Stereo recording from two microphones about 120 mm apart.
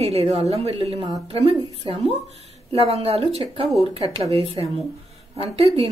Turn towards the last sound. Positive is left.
turn(degrees=-55)  # may be behind; listen again after turning